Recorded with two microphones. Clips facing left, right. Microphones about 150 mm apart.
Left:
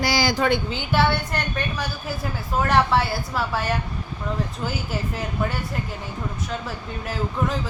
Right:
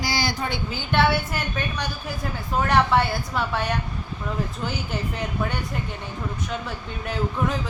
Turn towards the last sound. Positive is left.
turn(degrees=0)  # may be behind; listen again after turning